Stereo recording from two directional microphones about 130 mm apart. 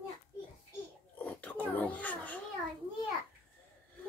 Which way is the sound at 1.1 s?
10° left (ahead or behind).